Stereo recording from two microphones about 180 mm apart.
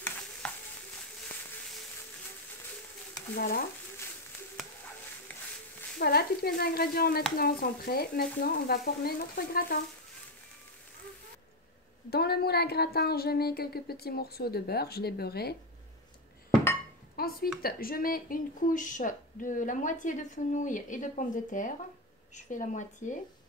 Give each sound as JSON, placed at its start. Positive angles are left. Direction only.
{"t": 3.3, "sound": "a woman's voice", "side_deg": 55}
{"t": 5.3, "sound": "a sound", "side_deg": 10}
{"t": 5.9, "sound": "a woman's voice", "side_deg": 60}
{"t": 12.1, "sound": "a woman's voice", "side_deg": 60}
{"t": 17.1, "sound": "speech", "side_deg": 55}